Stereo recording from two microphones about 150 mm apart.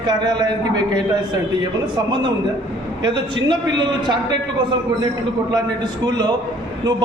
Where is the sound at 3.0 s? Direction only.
30° right (ahead or behind).